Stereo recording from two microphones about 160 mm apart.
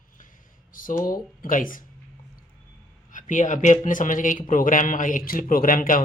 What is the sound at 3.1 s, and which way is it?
Speech, 50° left (ahead or behind).